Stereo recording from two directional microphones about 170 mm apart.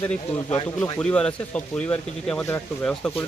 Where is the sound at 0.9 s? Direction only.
5° left (ahead or behind).